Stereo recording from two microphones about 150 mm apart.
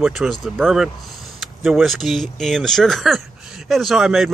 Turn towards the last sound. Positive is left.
turn(degrees=0)  # may be behind; listen again after turning